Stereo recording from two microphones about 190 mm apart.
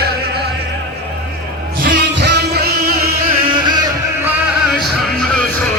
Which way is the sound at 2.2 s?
65° right (ahead or behind).